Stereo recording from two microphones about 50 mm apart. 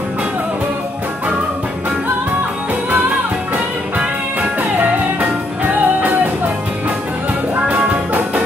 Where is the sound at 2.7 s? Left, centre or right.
Right.